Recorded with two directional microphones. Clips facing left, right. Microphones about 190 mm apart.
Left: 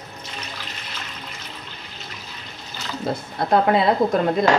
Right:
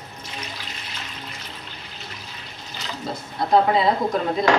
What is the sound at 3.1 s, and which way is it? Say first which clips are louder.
Speech: left 6 dB; 55° left (ahead or behind).